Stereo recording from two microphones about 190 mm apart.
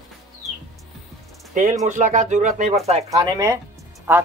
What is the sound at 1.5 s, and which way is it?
Speech, 40° right (ahead or behind).